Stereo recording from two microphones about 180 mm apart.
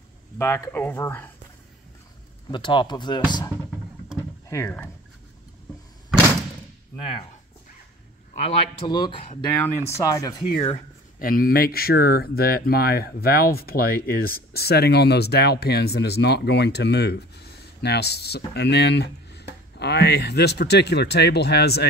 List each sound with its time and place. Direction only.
0.4 s speech: 15° left (ahead or behind)
2.5 s speech: 25° left (ahead or behind)
4.2 s a sound: 15° left (ahead or behind)
7.0 s speech: 25° left (ahead or behind)
8.4 s speech: 35° left (ahead or behind)
9.6 s speech: 15° left (ahead or behind)
11.1 s speech: 55° left (ahead or behind)